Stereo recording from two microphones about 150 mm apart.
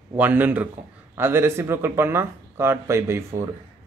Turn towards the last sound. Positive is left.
turn(degrees=-15)  # may be behind; listen again after turning